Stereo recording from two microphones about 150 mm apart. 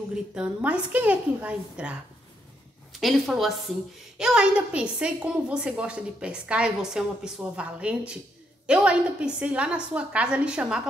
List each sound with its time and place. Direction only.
0.1 s a woman's voice: 5° right (ahead or behind)